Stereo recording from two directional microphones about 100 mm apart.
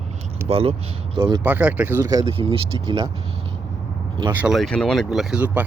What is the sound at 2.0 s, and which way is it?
Speech, 35° right (ahead or behind).